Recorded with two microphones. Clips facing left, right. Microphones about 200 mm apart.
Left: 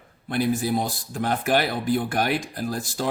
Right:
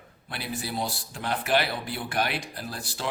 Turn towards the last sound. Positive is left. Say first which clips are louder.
# left 7 dB
turn(degrees=45)  # may be behind; listen again after turning